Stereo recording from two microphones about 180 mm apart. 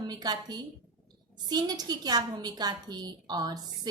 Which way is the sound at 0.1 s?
20° right (ahead or behind).